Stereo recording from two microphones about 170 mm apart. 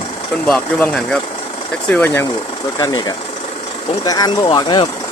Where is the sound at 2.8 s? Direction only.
25° left (ahead or behind).